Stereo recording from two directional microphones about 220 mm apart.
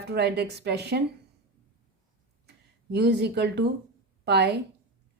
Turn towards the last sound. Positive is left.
turn(degrees=-50)  # may be behind; listen again after turning